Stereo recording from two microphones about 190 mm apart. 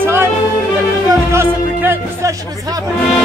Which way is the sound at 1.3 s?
10° right (ahead or behind).